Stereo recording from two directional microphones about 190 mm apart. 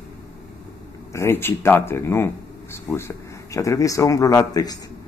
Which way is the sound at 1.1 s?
15° left (ahead or behind).